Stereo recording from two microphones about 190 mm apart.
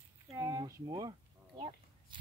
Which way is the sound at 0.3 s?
20° right (ahead or behind).